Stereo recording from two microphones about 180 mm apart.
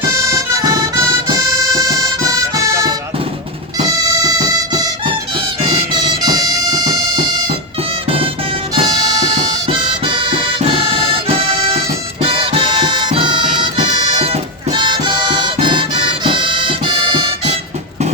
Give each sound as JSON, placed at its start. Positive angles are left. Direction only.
{"t": 0.2, "sound": "harmonica", "side_deg": -15}
{"t": 4.2, "sound": "music", "side_deg": -20}
{"t": 8.7, "sound": "music", "side_deg": -20}